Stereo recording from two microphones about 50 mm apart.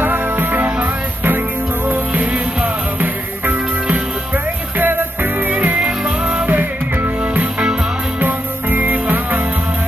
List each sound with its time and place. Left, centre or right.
0.0 s music: right
4.7 s music: right
5.8 s music: centre
6.5 s music: right